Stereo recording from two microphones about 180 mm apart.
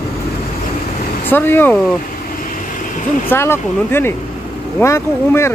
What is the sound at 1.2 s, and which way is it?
Speech, 10° left (ahead or behind).